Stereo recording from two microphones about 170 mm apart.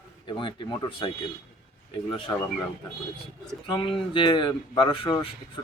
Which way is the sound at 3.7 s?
30° left (ahead or behind).